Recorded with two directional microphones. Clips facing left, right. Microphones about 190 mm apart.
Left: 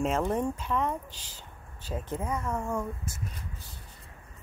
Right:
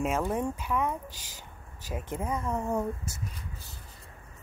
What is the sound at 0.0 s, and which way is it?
Speech, 5° right (ahead or behind).